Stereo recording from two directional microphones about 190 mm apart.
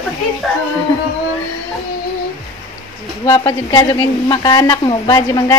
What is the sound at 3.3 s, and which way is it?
A woman's voice, 20° left (ahead or behind).